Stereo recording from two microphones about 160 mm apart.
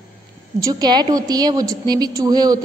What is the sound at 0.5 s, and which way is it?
A woman's voice, 25° right (ahead or behind).